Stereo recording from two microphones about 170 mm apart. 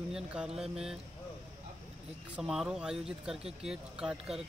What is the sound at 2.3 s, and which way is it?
Speech, centre (ahead or behind).